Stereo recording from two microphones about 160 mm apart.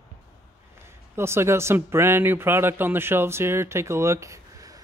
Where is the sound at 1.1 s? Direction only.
15° right (ahead or behind).